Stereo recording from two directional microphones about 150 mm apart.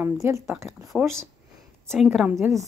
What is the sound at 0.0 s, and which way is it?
Speech, 15° right (ahead or behind).